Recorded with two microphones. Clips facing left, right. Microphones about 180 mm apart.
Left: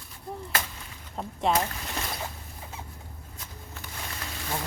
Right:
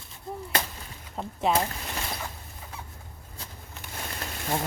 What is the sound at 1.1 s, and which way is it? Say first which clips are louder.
Speech: even; centre (ahead or behind).